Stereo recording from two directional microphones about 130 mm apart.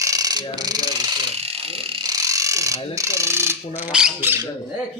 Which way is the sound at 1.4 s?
50° right (ahead or behind).